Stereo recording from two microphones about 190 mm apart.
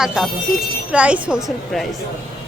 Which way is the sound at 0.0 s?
Centre (ahead or behind).